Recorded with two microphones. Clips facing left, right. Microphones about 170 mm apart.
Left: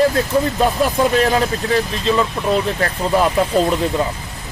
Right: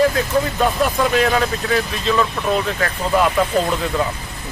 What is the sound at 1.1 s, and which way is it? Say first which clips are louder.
Speech: left 1 dB; 35° left (ahead or behind).